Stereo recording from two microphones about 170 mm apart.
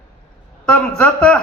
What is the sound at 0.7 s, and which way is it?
Speech, 10° left (ahead or behind).